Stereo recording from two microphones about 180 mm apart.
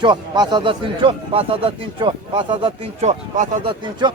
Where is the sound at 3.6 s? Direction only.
25° right (ahead or behind).